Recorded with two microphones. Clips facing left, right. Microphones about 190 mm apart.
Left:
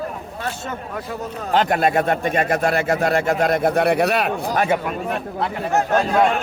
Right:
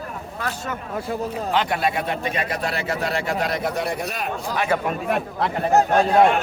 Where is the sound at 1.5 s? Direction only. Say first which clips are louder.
Left 6 dB; 45° left (ahead or behind); by 4.3 s 70° left (ahead or behind).